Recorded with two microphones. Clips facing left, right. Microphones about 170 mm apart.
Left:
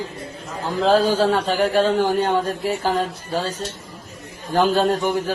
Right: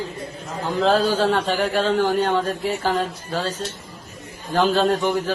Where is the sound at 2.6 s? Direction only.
40° left (ahead or behind).